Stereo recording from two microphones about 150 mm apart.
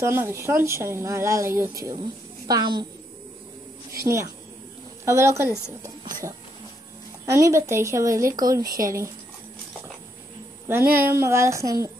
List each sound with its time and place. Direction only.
0.0 s a child's voice: 15° right (ahead or behind)
4.0 s speech: 20° right (ahead or behind)
7.2 s speech: 20° right (ahead or behind)
10.7 s speech: 15° right (ahead or behind)